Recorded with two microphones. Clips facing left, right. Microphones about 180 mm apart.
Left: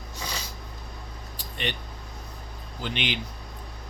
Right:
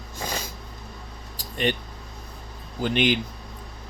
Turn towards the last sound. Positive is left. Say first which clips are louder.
# right 8 dB
turn(degrees=-45)  # may be behind; listen again after turning